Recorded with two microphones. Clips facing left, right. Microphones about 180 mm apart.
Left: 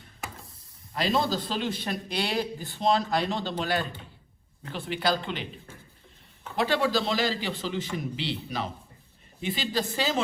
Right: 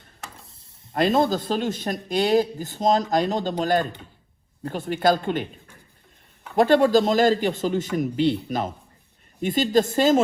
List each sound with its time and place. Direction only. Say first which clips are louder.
0.9 s speech: right 6 dB; 50° right (ahead or behind)
6.6 s speech: right 9 dB; 50° right (ahead or behind)